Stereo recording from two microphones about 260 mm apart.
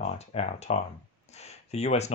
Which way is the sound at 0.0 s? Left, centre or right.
Left.